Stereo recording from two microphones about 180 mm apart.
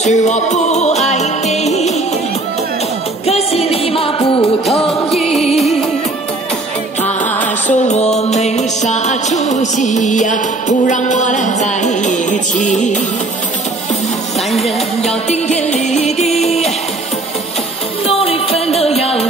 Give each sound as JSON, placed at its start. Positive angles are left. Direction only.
{"t": 0.0, "sound": "music", "side_deg": 40}
{"t": 3.3, "sound": "music", "side_deg": 35}
{"t": 4.6, "sound": "music", "side_deg": 0}
{"t": 7.6, "sound": "music", "side_deg": 40}
{"t": 15.0, "sound": "music", "side_deg": 35}
{"t": 18.0, "sound": "music", "side_deg": 35}